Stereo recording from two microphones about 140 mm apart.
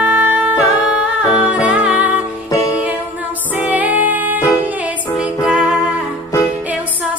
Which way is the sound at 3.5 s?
10° right (ahead or behind).